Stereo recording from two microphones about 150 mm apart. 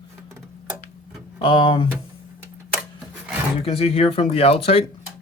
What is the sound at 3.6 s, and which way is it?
Speech, 40° left (ahead or behind).